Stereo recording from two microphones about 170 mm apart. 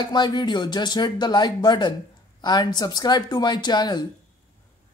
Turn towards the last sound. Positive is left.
turn(degrees=25)  # may be behind; listen again after turning